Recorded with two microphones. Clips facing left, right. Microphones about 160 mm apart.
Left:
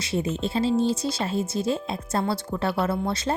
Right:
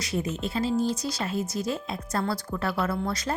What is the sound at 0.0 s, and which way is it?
A woman's voice, 25° left (ahead or behind).